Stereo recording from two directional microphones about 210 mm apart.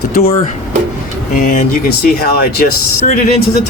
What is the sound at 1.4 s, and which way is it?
Speech, 40° left (ahead or behind).